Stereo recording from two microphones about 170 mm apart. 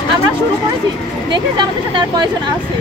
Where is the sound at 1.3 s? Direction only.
25° right (ahead or behind).